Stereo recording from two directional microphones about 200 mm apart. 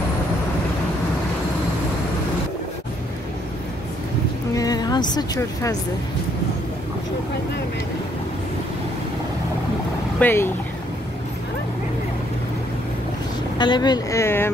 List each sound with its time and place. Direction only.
4.6 s a woman's voice: 20° left (ahead or behind)
10.1 s speech: 10° left (ahead or behind)
13.6 s speech: 20° left (ahead or behind)